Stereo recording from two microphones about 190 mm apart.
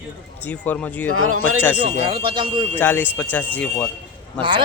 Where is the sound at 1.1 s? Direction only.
90° right.